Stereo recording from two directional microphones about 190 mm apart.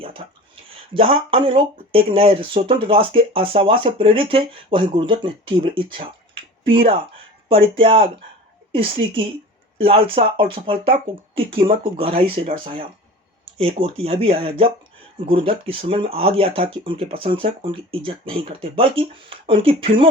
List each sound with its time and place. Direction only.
0.9 s speech: 30° right (ahead or behind)